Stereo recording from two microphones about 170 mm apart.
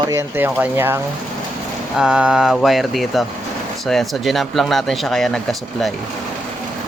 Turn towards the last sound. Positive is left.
turn(degrees=0)  # may be behind; listen again after turning